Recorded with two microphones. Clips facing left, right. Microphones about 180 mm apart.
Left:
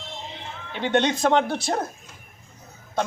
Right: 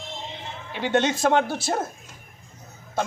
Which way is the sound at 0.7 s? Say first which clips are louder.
Left 1 dB; 5° right (ahead or behind).